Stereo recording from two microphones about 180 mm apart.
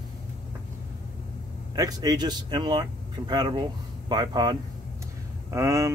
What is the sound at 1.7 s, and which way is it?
Speech, 20° right (ahead or behind).